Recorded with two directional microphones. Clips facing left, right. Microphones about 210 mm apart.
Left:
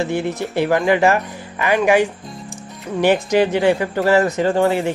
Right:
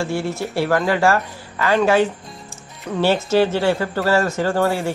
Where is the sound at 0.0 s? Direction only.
20° left (ahead or behind).